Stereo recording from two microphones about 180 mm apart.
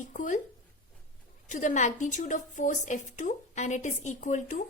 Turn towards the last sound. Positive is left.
turn(degrees=45)  # may be behind; listen again after turning